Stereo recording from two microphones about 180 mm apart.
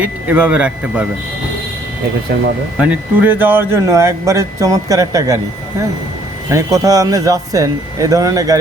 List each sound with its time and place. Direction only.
0.0 s speech: 10° right (ahead or behind)
2.7 s speech: 5° right (ahead or behind)
6.5 s speech: 15° right (ahead or behind)